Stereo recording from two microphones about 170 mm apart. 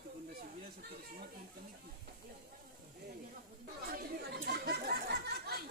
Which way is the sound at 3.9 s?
70° right (ahead or behind).